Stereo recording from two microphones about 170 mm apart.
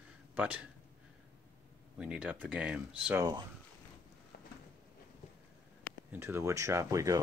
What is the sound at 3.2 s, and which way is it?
Speech, 20° right (ahead or behind).